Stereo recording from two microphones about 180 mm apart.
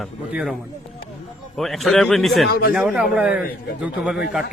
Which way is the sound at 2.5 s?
55° left (ahead or behind).